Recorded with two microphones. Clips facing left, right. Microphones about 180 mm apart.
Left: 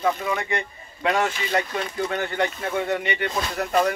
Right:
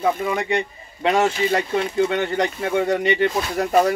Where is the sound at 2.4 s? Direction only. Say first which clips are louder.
Right 4 dB; 40° right (ahead or behind).